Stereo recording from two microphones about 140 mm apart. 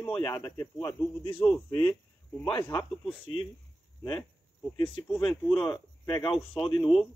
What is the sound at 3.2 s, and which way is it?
Speech, 55° right (ahead or behind).